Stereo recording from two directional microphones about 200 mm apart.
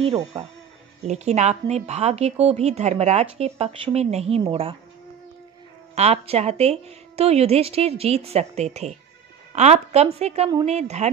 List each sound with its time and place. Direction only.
1.0 s a woman's voice: 35° right (ahead or behind)
5.9 s a woman's voice: 30° right (ahead or behind)